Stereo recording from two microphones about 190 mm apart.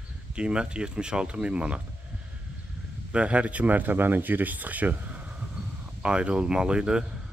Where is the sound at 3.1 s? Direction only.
5° right (ahead or behind).